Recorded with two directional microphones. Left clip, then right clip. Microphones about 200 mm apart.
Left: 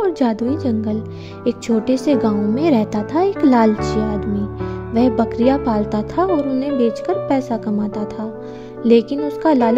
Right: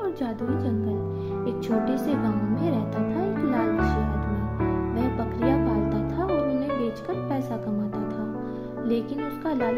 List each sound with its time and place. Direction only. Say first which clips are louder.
0.0 s a woman's voice: left 11 dB; 40° left (ahead or behind)
4.9 s speech: left 11 dB; 45° left (ahead or behind)
8.8 s speech: left 14 dB; 45° left (ahead or behind)